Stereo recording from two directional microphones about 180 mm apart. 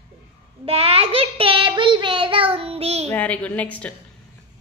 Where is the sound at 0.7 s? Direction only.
30° right (ahead or behind).